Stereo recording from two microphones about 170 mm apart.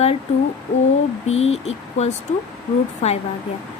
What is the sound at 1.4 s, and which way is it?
A woman's voice, 40° left (ahead or behind).